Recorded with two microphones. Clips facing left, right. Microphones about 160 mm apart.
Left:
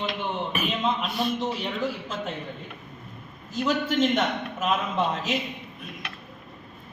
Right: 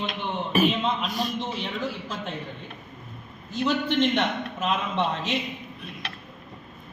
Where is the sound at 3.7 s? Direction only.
5° left (ahead or behind).